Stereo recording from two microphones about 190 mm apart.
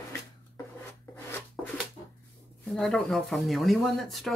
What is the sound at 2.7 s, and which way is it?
Speech, centre (ahead or behind).